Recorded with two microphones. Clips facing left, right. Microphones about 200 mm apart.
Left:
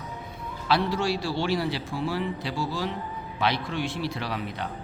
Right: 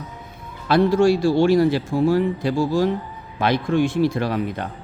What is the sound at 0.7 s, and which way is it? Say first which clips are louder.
Speech: right 10 dB; 50° right (ahead or behind).